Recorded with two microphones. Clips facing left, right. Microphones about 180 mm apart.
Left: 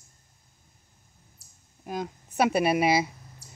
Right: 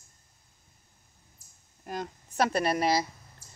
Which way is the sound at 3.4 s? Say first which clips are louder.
Left 5 dB; 75° left (ahead or behind).